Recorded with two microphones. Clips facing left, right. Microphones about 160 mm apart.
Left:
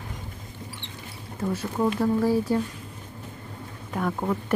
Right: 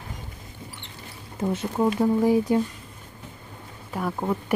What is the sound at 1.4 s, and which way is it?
A woman's voice, 20° right (ahead or behind).